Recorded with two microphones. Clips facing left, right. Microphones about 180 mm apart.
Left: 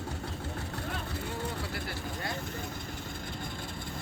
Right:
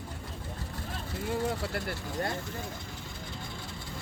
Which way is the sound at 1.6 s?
55° right (ahead or behind).